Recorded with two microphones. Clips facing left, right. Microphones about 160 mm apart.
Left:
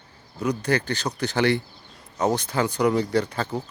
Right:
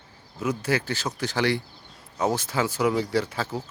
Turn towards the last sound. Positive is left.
turn(degrees=-5)  # may be behind; listen again after turning